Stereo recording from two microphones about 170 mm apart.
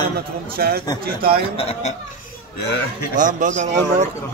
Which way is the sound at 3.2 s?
50° right (ahead or behind).